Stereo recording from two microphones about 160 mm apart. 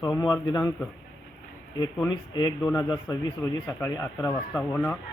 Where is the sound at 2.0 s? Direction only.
25° left (ahead or behind).